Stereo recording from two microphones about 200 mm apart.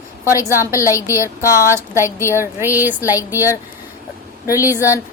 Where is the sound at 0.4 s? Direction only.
10° right (ahead or behind).